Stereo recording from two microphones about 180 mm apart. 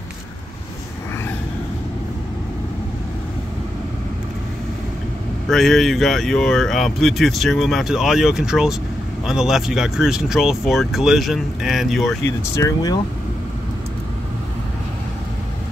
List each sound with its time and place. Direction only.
5.5 s speech: centre (ahead or behind)
12.3 s speech: 15° left (ahead or behind)